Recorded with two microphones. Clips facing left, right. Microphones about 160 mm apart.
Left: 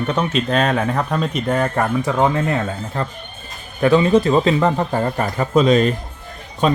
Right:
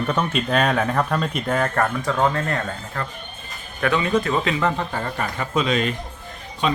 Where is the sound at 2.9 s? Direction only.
25° left (ahead or behind).